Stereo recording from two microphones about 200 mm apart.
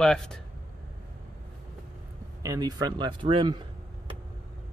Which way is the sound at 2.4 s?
20° right (ahead or behind).